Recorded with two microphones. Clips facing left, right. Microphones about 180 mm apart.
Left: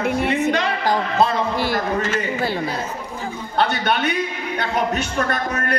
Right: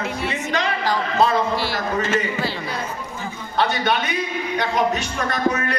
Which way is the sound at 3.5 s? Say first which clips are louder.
Even; 55° left (ahead or behind).